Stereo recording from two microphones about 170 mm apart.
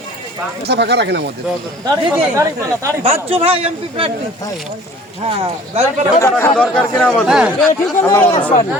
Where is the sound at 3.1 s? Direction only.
35° right (ahead or behind).